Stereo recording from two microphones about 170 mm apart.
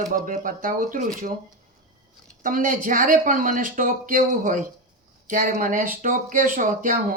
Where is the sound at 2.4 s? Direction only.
50° right (ahead or behind).